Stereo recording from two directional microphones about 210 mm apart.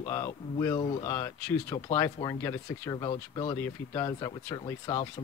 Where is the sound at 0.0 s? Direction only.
15° left (ahead or behind).